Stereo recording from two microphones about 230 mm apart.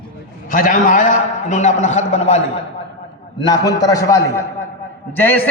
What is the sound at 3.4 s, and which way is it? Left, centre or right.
A man's voice, centre.